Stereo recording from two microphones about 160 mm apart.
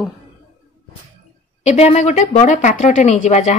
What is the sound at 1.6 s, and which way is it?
Speech, 45° left (ahead or behind).